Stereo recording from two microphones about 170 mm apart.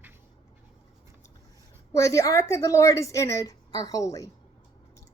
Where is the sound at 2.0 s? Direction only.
20° left (ahead or behind).